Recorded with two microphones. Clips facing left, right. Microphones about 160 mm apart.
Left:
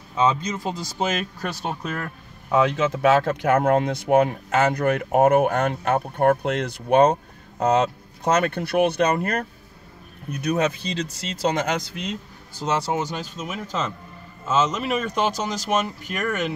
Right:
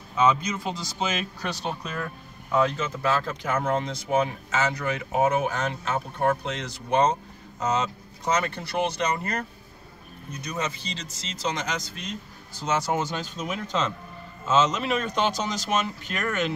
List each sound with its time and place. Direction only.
0.2 s speech: 35° left (ahead or behind)
2.5 s speech: 85° left; by 12.2 s 70° left (ahead or behind)
12.5 s speech: 35° left (ahead or behind)
12.9 s speech: 10° left (ahead or behind)